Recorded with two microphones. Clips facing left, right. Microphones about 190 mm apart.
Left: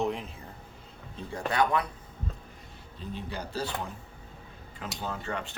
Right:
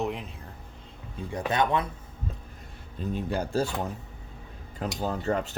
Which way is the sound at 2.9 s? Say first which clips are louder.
Right 8 dB; 50° right (ahead or behind).